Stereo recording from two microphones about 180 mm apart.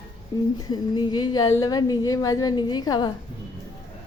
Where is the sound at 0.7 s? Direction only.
25° left (ahead or behind).